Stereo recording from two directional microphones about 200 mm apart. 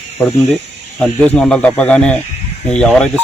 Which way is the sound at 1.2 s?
5° left (ahead or behind).